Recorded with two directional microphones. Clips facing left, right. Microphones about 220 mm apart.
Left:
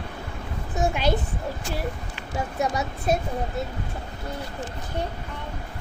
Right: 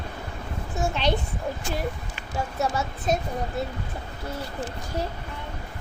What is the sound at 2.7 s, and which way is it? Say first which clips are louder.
Speech: left 1 dB; 15° left (ahead or behind).